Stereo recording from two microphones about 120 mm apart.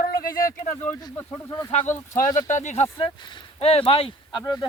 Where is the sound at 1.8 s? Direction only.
20° left (ahead or behind).